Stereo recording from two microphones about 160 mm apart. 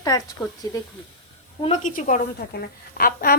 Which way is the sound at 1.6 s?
50° left (ahead or behind).